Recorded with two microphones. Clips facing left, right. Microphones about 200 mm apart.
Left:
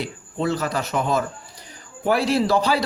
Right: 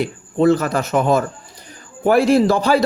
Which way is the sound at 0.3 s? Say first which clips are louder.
Right 8 dB; 50° right (ahead or behind).